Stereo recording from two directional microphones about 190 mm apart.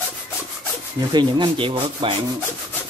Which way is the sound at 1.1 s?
25° right (ahead or behind).